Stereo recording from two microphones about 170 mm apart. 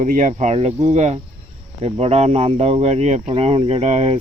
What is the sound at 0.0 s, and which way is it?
Speech, 50° right (ahead or behind).